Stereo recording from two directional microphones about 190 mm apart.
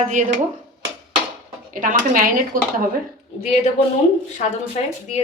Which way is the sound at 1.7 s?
45° right (ahead or behind).